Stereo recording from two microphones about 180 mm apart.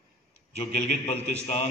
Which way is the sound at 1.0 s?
35° left (ahead or behind).